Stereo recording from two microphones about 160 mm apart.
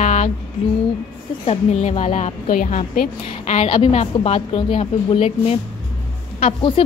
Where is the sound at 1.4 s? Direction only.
40° left (ahead or behind).